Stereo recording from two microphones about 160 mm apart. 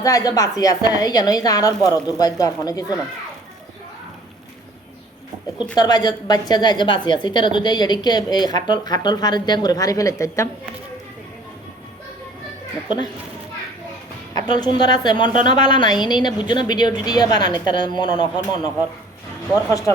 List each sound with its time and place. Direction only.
0.0 s a woman's voice: 20° left (ahead or behind)
5.7 s a woman's voice: 25° left (ahead or behind)
14.3 s a woman's voice: 25° left (ahead or behind)
19.5 s a woman's voice: 20° left (ahead or behind)